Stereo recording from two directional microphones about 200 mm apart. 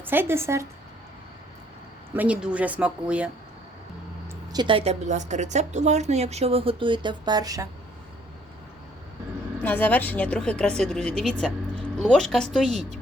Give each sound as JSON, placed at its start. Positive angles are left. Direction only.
{"t": 0.0, "sound": "speech", "side_deg": -10}
{"t": 2.1, "sound": "speech", "side_deg": -5}
{"t": 4.3, "sound": "a woman's voice", "side_deg": -20}
{"t": 9.6, "sound": "speech", "side_deg": 10}